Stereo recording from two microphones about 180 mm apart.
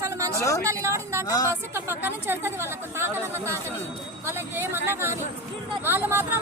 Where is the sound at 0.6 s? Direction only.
15° right (ahead or behind).